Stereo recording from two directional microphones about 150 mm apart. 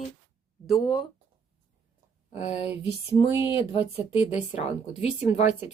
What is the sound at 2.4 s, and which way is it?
Speech, 50° left (ahead or behind).